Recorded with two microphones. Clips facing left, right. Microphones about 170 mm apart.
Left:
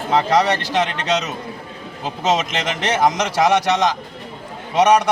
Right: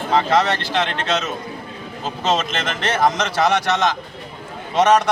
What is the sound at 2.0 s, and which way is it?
A man's voice, 15° left (ahead or behind).